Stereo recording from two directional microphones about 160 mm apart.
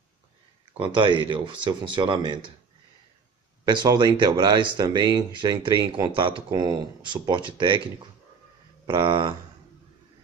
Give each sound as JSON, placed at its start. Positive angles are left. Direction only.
{"t": 0.7, "sound": "speech", "side_deg": -30}
{"t": 3.6, "sound": "speech", "side_deg": -25}